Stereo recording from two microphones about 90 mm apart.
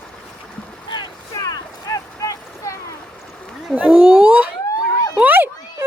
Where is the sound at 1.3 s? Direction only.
40° left (ahead or behind).